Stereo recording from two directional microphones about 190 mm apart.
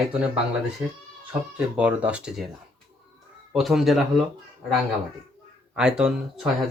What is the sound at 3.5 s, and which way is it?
Speech, centre (ahead or behind).